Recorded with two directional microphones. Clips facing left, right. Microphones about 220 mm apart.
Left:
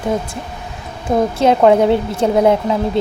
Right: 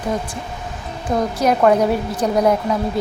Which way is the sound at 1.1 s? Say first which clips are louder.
Left 4 dB; 25° left (ahead or behind).